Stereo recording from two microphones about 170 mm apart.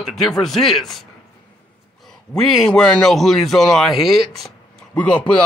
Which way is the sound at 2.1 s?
Centre (ahead or behind).